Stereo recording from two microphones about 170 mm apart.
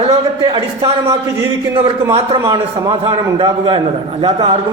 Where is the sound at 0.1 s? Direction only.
25° right (ahead or behind).